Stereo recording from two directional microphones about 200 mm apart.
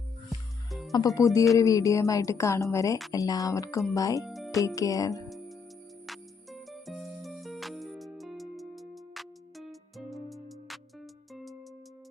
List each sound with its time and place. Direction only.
0.3 s music: centre (ahead or behind)
0.9 s speech: 15° left (ahead or behind)
4.2 s music: centre (ahead or behind)
4.5 s speech: 15° left (ahead or behind)
6.1 s music: centre (ahead or behind)